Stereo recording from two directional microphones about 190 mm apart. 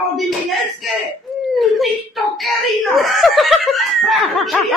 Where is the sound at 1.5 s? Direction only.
Centre (ahead or behind).